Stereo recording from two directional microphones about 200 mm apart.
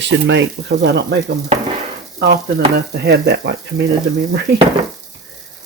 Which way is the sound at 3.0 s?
55° right (ahead or behind).